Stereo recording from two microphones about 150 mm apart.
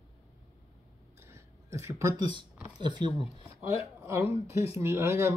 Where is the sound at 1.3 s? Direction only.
20° right (ahead or behind).